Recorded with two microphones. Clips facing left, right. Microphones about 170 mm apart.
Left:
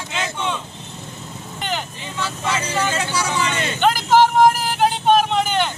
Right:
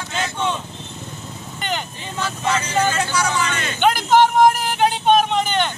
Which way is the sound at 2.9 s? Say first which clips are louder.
Right 1 dB; 30° left (ahead or behind).